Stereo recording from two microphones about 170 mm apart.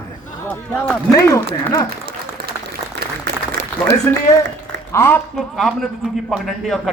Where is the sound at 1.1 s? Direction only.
20° left (ahead or behind).